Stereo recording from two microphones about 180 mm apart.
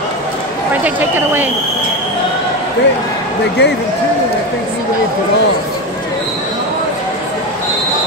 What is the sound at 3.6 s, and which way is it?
Speech, 70° left (ahead or behind).